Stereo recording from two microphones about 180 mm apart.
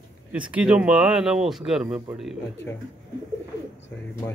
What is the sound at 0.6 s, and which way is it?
Speech, 5° right (ahead or behind).